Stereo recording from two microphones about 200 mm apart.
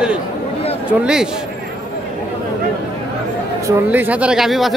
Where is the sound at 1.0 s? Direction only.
5° right (ahead or behind).